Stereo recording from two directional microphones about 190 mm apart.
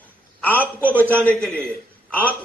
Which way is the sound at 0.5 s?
10° left (ahead or behind).